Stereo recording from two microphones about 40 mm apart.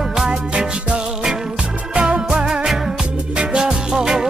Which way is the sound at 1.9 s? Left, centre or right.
Right.